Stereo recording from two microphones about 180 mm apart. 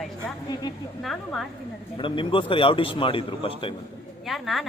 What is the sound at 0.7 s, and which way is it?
Speech, 20° left (ahead or behind).